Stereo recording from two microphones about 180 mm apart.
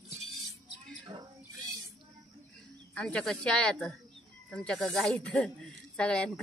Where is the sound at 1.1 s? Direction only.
35° right (ahead or behind).